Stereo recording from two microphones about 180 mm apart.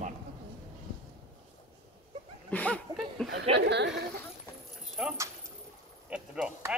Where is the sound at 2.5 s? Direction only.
10° left (ahead or behind).